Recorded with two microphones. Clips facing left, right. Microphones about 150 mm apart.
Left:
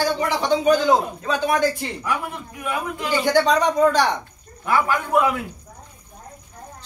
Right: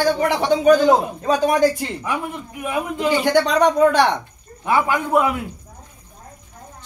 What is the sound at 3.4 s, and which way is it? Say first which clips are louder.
Speech: right 2 dB; 65° right (ahead or behind).